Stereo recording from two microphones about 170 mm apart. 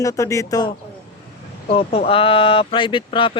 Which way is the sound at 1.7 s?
35° left (ahead or behind).